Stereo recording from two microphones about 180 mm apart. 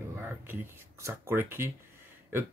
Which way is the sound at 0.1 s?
10° right (ahead or behind).